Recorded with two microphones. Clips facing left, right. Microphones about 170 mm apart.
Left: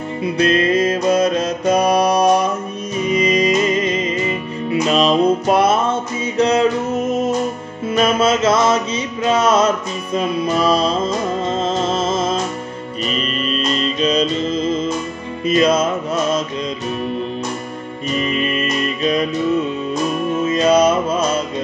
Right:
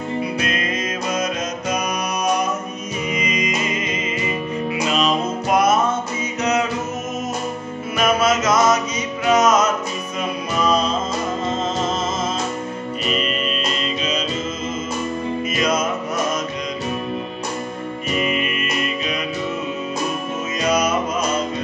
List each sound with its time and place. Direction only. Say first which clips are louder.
0.4 s music: left 9 dB; 30° left (ahead or behind)
8.0 s mantra: left 3 dB; 30° left (ahead or behind)
9.3 s music: left 1 dB; 30° left (ahead or behind)
13.7 s music: left 7 dB; 35° left (ahead or behind)
18.3 s music: left 4 dB; 35° left (ahead or behind)
20.4 s music: left 7 dB; 30° left (ahead or behind)